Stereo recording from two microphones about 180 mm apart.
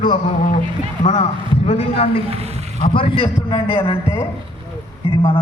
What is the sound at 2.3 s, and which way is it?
Speech, 35° right (ahead or behind).